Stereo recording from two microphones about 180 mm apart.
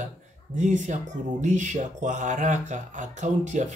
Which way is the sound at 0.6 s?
40° right (ahead or behind).